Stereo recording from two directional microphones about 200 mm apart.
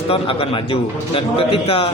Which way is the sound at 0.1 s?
25° left (ahead or behind).